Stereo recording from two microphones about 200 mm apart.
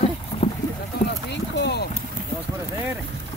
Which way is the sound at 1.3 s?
60° left (ahead or behind).